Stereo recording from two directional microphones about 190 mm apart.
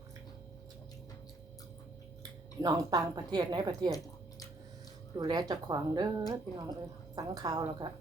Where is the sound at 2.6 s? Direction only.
20° right (ahead or behind).